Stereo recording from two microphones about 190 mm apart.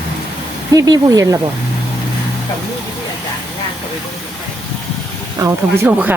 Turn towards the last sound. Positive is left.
turn(degrees=-10)  # may be behind; listen again after turning